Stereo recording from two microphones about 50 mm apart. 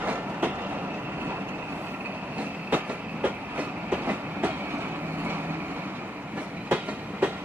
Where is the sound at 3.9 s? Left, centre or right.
Right.